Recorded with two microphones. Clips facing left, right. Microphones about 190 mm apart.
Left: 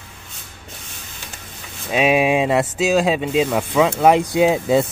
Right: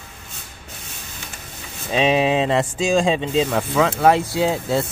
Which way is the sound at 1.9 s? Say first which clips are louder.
Left 1 dB; 10° left (ahead or behind).